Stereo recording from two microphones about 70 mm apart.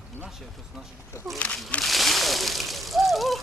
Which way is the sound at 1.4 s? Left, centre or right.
Centre.